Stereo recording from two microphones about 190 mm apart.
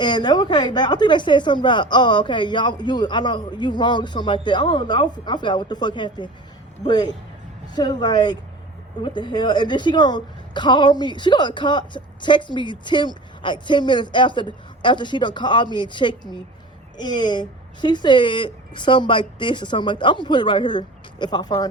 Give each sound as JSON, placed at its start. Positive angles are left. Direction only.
{"t": 0.0, "sound": "a woman's voice", "side_deg": 25}